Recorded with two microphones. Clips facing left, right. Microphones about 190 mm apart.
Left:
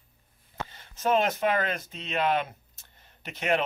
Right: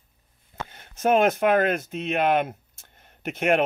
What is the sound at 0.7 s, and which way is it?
Speech, 55° right (ahead or behind).